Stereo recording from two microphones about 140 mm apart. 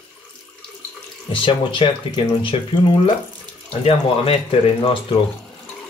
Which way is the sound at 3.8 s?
45° left (ahead or behind).